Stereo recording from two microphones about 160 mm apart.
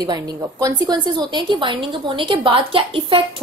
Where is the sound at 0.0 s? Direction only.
25° right (ahead or behind).